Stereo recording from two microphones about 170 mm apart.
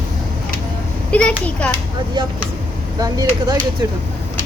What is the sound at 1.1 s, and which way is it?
Speech, 10° left (ahead or behind).